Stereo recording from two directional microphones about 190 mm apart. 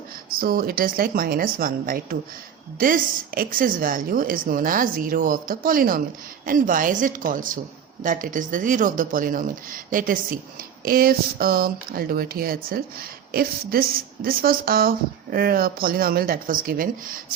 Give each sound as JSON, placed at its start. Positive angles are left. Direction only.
{"t": 0.3, "sound": "speech", "side_deg": -50}